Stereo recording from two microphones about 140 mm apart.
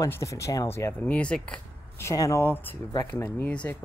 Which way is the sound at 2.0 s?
20° left (ahead or behind).